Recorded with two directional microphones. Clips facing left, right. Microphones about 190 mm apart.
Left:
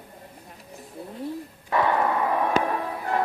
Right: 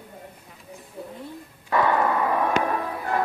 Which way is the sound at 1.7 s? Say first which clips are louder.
Right 1 dB; 10° left (ahead or behind).